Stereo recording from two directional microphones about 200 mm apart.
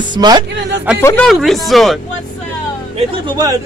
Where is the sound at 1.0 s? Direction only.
10° left (ahead or behind).